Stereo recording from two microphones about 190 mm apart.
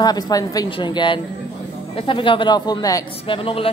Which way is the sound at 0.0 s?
20° left (ahead or behind).